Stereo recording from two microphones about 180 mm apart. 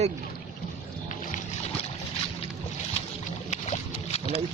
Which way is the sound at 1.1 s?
45° left (ahead or behind).